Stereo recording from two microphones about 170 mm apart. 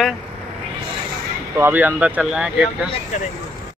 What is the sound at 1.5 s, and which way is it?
Speech, 10° right (ahead or behind).